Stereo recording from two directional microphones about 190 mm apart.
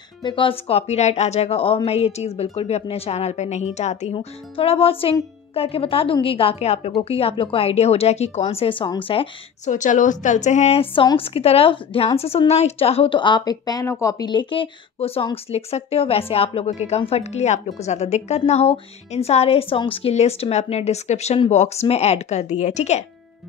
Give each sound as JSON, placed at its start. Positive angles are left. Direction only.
{"t": 0.2, "sound": "a woman's voice", "side_deg": 25}
{"t": 9.7, "sound": "a woman's voice", "side_deg": 40}